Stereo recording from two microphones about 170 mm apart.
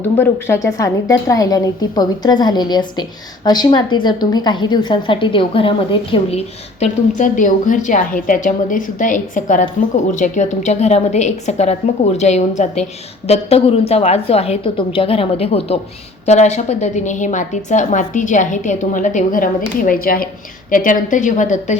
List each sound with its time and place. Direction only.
0.2 s a woman's voice: 15° left (ahead or behind); by 21.8 s 45° left (ahead or behind)